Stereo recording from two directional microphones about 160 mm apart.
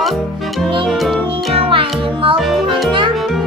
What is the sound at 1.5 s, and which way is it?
Music, 35° right (ahead or behind).